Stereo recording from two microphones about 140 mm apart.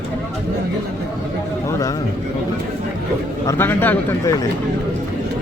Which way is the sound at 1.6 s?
20° left (ahead or behind).